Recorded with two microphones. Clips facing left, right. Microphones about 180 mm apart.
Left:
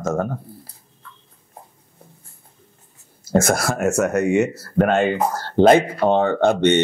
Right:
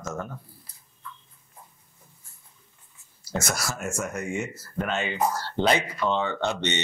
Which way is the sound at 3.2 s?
50° left (ahead or behind).